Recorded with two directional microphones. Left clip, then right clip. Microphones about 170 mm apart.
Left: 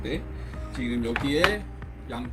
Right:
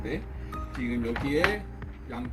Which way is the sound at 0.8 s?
Centre (ahead or behind).